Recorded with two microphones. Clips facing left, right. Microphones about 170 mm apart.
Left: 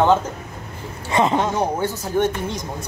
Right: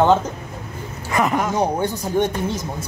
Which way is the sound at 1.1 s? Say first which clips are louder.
Left 1 dB; 25° left (ahead or behind).